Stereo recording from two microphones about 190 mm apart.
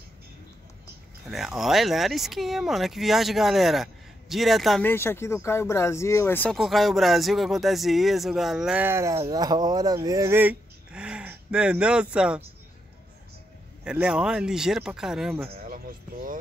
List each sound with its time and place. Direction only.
1.2 s speech: centre (ahead or behind)
4.8 s speech: 10° left (ahead or behind); by 12.4 s 5° right (ahead or behind)
13.8 s speech: 5° right (ahead or behind)
15.6 s music: 45° right (ahead or behind)